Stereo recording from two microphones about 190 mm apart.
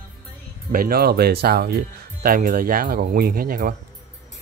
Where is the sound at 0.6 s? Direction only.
50° right (ahead or behind).